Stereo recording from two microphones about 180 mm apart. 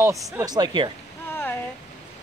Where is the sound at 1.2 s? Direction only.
10° left (ahead or behind).